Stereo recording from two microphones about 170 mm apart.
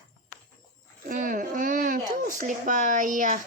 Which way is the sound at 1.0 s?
55° right (ahead or behind).